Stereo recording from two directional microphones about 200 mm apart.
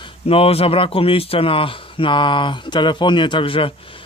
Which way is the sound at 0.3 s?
30° left (ahead or behind).